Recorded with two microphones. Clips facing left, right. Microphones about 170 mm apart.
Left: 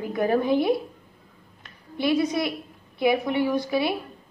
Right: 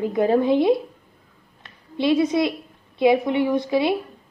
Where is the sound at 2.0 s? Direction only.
25° right (ahead or behind).